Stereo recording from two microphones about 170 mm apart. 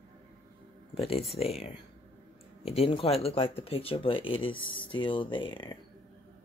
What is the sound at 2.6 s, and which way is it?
Speech, 35° left (ahead or behind).